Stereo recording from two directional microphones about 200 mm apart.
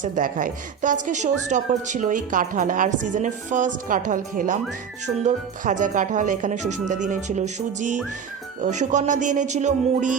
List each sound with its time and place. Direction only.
0.0 s a woman's voice: 40° right (ahead or behind)